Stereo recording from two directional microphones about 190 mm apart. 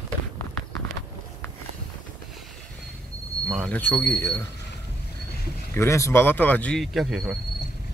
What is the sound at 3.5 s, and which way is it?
Speech, 5° left (ahead or behind).